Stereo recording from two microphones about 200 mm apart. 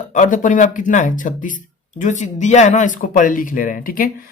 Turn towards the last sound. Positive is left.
turn(degrees=45)  # may be behind; listen again after turning